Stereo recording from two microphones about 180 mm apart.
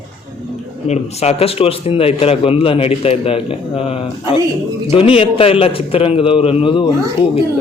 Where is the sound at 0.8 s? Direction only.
35° left (ahead or behind).